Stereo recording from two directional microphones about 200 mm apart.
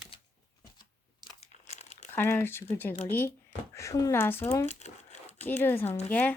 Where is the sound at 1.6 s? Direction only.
35° left (ahead or behind).